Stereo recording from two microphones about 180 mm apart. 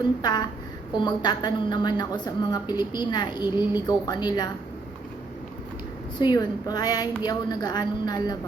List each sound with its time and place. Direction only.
0.0 s a woman's voice: 25° left (ahead or behind)
6.2 s a woman's voice: 20° left (ahead or behind)